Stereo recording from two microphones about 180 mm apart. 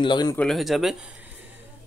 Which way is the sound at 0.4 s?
Centre (ahead or behind).